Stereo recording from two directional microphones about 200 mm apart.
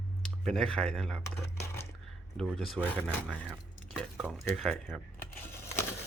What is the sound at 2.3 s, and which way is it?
Speech, 5° left (ahead or behind).